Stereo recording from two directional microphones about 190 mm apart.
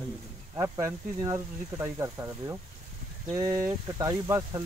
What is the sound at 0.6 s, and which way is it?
Speech, 15° right (ahead or behind).